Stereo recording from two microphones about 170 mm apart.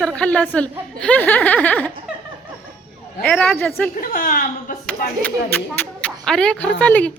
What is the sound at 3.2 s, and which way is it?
Speech, 5° left (ahead or behind).